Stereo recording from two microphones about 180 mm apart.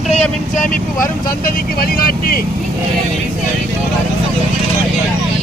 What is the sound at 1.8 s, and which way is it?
Speech, 55° left (ahead or behind).